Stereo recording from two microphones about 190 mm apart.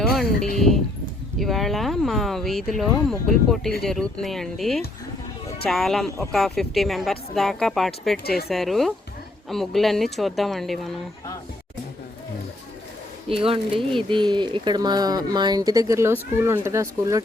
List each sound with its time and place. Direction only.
0.1 s a sound: centre (ahead or behind)
0.5 s speech: centre (ahead or behind)
13.2 s speech: 30° right (ahead or behind)